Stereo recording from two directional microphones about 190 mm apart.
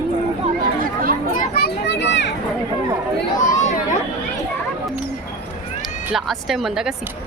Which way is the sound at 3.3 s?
40° left (ahead or behind).